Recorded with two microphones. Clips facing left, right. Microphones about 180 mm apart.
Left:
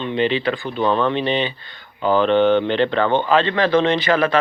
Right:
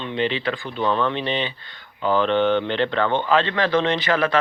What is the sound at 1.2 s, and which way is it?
Speech, 10° left (ahead or behind).